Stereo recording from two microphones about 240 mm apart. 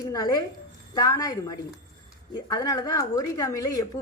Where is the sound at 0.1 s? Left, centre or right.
Centre.